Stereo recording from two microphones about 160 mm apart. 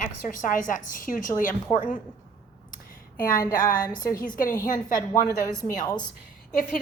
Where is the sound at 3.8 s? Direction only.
25° left (ahead or behind).